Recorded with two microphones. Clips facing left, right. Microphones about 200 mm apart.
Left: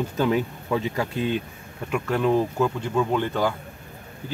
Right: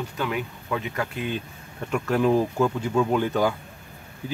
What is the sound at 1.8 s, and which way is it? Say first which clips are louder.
Speech: right 1 dB; centre (ahead or behind).